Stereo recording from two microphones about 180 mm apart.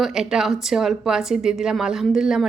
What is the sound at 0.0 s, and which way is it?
A woman's voice, 5° right (ahead or behind).